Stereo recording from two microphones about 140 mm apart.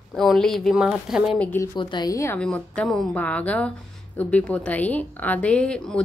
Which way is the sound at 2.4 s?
5° left (ahead or behind).